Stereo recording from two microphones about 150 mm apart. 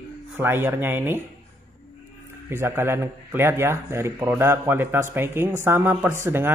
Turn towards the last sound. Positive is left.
turn(degrees=-15)  # may be behind; listen again after turning